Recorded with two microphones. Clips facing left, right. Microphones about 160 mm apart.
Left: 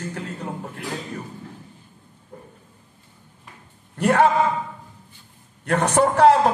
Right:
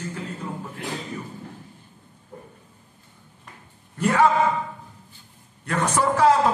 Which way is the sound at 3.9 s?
65° left (ahead or behind).